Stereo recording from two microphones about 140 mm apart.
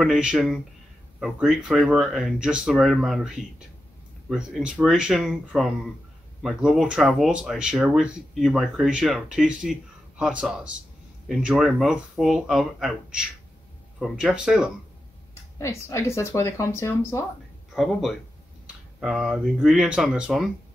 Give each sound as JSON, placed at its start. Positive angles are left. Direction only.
{"t": 0.0, "sound": "speech", "side_deg": -5}
{"t": 15.6, "sound": "speech", "side_deg": 20}
{"t": 17.7, "sound": "speech", "side_deg": 0}